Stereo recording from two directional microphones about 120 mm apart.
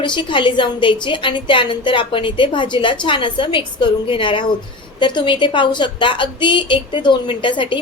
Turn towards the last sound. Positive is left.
turn(degrees=45)  # may be behind; listen again after turning